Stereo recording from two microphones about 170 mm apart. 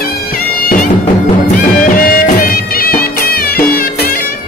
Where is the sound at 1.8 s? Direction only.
55° left (ahead or behind).